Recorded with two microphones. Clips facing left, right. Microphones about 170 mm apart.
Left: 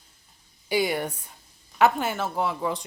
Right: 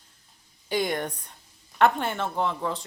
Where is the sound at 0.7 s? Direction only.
5° left (ahead or behind).